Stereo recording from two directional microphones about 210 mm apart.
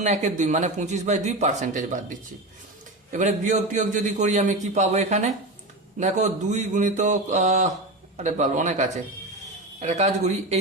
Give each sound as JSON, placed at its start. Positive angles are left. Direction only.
{"t": 0.0, "sound": "speech", "side_deg": -35}